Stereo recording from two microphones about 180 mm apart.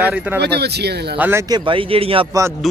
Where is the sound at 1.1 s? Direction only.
10° right (ahead or behind); by 2.2 s 30° right (ahead or behind).